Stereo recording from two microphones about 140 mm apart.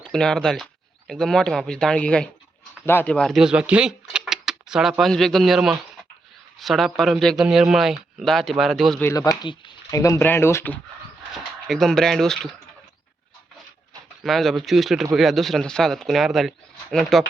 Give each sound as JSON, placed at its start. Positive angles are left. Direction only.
{"t": 0.0, "sound": "speech", "side_deg": 5}
{"t": 9.1, "sound": "speech", "side_deg": 30}
{"t": 10.0, "sound": "speech", "side_deg": 20}
{"t": 11.7, "sound": "speech", "side_deg": 5}
{"t": 14.3, "sound": "speech", "side_deg": 0}